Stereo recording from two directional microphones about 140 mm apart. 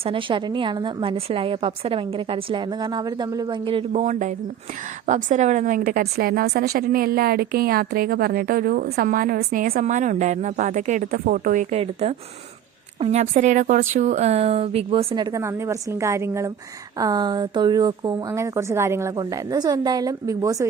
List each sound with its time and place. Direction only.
0.0 s a woman's voice: 40° right (ahead or behind)
3.9 s a woman's voice: 60° right (ahead or behind); by 9.8 s 85° right
9.8 s speech: 60° right (ahead or behind)
11.8 s a woman's voice: 45° right (ahead or behind); by 20.7 s 25° right (ahead or behind)